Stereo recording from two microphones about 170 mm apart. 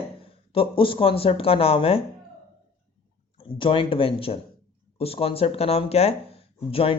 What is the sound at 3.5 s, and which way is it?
Speech, 30° left (ahead or behind).